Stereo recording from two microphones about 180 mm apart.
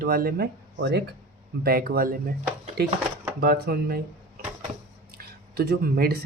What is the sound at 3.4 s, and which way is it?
Speech, 55° right (ahead or behind).